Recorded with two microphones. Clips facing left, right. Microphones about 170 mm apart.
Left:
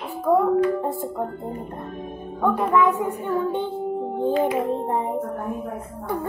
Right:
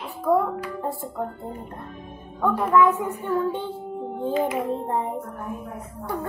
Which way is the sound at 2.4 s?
15° left (ahead or behind).